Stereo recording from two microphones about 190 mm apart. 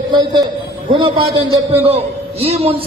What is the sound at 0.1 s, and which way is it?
A man's voice, 25° right (ahead or behind).